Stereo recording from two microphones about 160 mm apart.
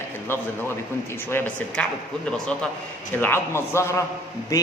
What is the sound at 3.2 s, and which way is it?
Speech, 15° left (ahead or behind).